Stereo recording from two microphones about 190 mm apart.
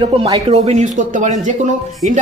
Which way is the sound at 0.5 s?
35° right (ahead or behind).